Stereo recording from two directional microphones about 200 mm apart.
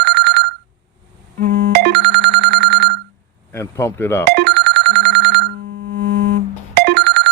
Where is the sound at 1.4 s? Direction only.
55° right (ahead or behind).